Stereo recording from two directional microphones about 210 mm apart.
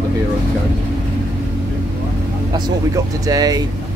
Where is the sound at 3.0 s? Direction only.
15° right (ahead or behind).